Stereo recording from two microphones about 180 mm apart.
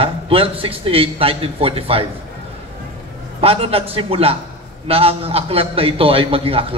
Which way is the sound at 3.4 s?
30° right (ahead or behind).